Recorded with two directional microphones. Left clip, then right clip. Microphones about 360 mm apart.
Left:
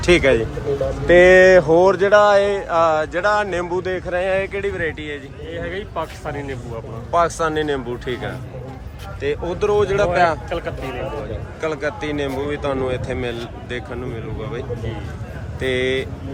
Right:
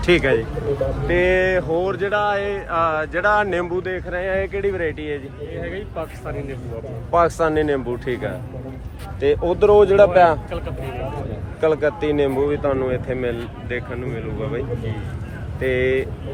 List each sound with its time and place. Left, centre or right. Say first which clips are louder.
0.0 s speech: left 2 dB; centre
5.5 s speech: left 3 dB; left
7.1 s speech: right 1 dB; centre
11.6 s speech: right 5 dB; centre
15.6 s speech: right 1 dB; centre